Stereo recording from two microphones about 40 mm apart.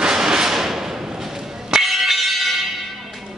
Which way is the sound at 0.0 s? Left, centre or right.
Centre.